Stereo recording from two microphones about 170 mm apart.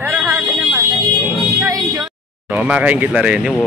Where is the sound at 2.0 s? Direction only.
5° right (ahead or behind).